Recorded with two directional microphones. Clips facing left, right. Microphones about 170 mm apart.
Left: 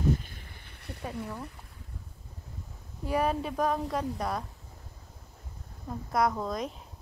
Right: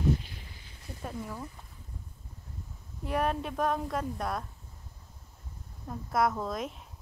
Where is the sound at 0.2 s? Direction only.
50° left (ahead or behind).